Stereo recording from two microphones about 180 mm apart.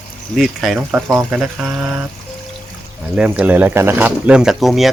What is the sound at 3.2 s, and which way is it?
Speech, 5° right (ahead or behind).